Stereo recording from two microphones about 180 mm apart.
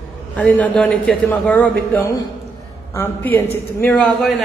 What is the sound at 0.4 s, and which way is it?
A man's voice, 5° left (ahead or behind).